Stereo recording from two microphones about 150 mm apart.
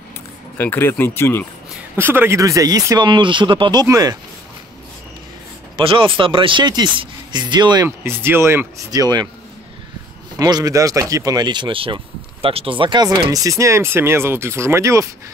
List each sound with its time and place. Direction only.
0.6 s speech: 15° left (ahead or behind)
2.0 s speech: 15° right (ahead or behind)
5.8 s speech: 35° right (ahead or behind)
10.4 s speech: 25° right (ahead or behind)